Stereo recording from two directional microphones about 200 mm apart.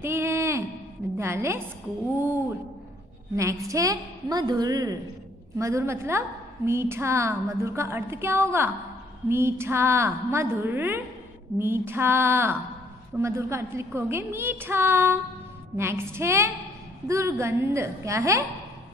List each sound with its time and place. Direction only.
0.0 s a sound: 10° right (ahead or behind)
1.1 s a woman's voice: 15° right (ahead or behind)
3.3 s a woman's voice: 15° right (ahead or behind)